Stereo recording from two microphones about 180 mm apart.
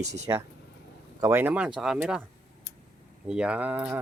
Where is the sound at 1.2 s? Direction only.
10° right (ahead or behind).